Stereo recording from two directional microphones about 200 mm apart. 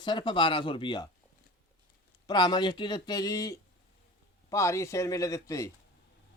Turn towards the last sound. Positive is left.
turn(degrees=15)  # may be behind; listen again after turning